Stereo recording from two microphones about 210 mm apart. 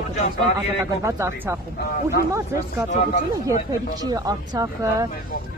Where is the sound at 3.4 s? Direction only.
15° right (ahead or behind).